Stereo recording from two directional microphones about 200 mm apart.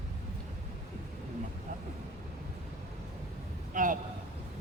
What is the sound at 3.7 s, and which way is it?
Vehicle, 40° right (ahead or behind).